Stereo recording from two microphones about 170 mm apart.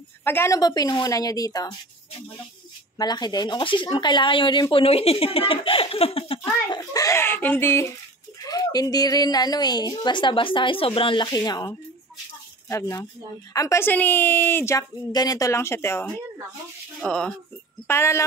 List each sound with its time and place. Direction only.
0.2 s a woman's voice: 15° left (ahead or behind)
3.0 s speech: 25° left (ahead or behind)
6.7 s a woman's voice: 20° left (ahead or behind)
17.0 s speech: 5° left (ahead or behind)
17.8 s a woman's voice: 15° left (ahead or behind)